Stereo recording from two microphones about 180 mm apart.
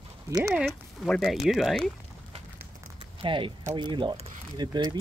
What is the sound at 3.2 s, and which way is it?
Speech, 30° right (ahead or behind).